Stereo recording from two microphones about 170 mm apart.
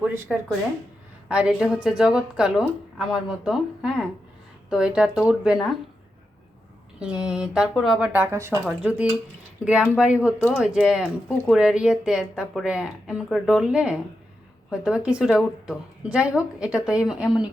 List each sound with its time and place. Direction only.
0.0 s speech: 5° right (ahead or behind)
7.0 s speech: 5° right (ahead or behind)